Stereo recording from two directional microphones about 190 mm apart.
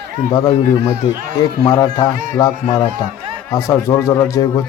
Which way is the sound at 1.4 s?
20° left (ahead or behind).